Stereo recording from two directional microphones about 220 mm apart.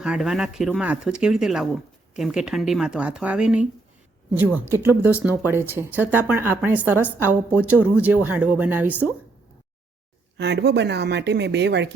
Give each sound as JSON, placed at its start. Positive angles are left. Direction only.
{"t": 0.0, "sound": "speech", "side_deg": -5}
{"t": 10.3, "sound": "speech", "side_deg": -50}